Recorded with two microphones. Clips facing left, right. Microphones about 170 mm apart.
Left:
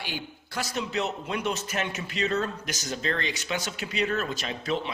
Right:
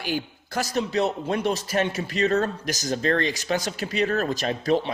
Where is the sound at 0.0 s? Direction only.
45° right (ahead or behind).